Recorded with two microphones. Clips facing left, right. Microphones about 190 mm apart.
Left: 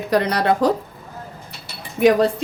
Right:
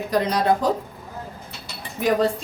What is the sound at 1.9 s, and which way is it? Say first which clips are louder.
Speech: left 5 dB; 70° left (ahead or behind).